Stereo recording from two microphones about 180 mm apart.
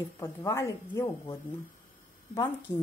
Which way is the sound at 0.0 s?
20° left (ahead or behind).